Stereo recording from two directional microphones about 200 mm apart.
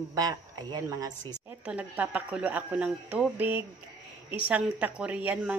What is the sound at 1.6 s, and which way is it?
Speech, 5° right (ahead or behind).